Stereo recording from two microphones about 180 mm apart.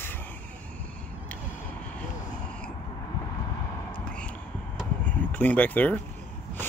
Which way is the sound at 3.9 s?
5° left (ahead or behind).